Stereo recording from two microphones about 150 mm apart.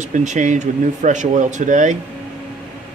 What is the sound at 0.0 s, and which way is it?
Speech, 55° right (ahead or behind).